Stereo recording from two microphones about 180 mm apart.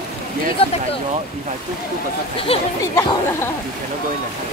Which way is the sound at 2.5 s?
30° left (ahead or behind).